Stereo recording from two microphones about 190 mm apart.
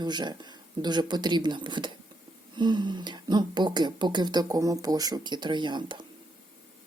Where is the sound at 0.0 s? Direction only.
20° right (ahead or behind).